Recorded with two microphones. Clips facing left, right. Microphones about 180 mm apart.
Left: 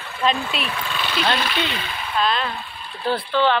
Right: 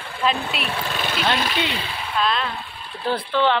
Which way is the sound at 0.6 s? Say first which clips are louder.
Right 1 dB; 35° right (ahead or behind).